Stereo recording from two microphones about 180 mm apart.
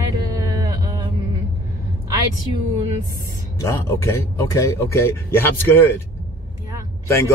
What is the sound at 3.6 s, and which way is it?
Speech, 15° left (ahead or behind).